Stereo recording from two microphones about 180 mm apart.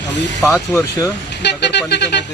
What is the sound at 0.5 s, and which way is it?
Speech, 15° left (ahead or behind).